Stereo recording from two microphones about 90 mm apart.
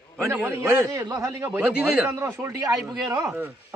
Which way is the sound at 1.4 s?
20° right (ahead or behind).